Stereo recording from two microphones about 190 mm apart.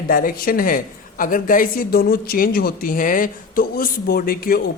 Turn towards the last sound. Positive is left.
turn(degrees=50)  # may be behind; listen again after turning